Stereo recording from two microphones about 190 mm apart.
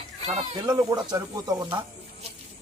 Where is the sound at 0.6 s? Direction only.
20° right (ahead or behind).